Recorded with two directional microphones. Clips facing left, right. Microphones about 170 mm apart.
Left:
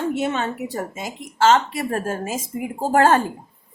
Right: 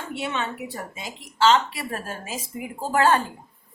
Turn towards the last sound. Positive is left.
turn(degrees=45)  # may be behind; listen again after turning